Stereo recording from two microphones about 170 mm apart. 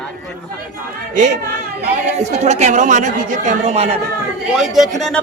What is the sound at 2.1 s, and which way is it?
Speech, 40° right (ahead or behind).